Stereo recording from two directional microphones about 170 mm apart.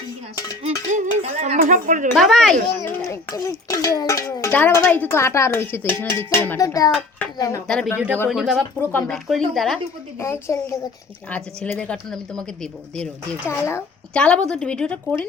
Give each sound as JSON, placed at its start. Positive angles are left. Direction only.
{"t": 0.6, "sound": "a sound", "side_deg": -40}
{"t": 2.1, "sound": "speech", "side_deg": 0}
{"t": 2.8, "sound": "speech", "side_deg": 15}
{"t": 7.7, "sound": "speech", "side_deg": 5}
{"t": 8.8, "sound": "speech", "side_deg": 10}
{"t": 10.2, "sound": "speech", "side_deg": 15}
{"t": 13.5, "sound": "speech", "side_deg": 15}